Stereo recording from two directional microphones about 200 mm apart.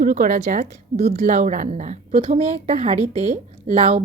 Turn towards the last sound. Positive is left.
turn(degrees=-30)  # may be behind; listen again after turning